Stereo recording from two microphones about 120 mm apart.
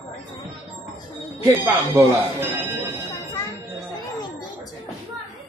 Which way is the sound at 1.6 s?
15° right (ahead or behind).